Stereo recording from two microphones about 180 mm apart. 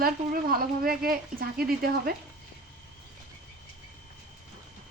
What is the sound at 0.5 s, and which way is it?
A woman's voice, 55° right (ahead or behind).